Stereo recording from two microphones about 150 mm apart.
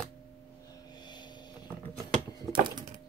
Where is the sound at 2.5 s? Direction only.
Centre (ahead or behind).